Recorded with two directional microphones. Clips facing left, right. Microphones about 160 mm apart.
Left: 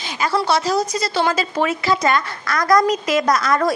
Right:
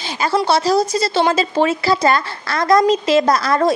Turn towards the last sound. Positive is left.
turn(degrees=-30)  # may be behind; listen again after turning